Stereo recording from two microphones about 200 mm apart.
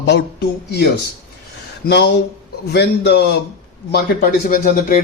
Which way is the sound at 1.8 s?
55° left (ahead or behind).